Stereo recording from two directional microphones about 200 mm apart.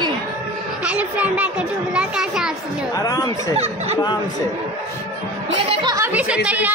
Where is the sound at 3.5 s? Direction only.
30° right (ahead or behind).